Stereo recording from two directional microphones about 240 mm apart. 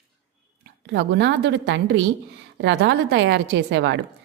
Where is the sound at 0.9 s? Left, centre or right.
Right.